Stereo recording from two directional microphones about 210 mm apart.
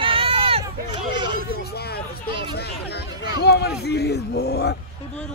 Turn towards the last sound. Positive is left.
turn(degrees=50)  # may be behind; listen again after turning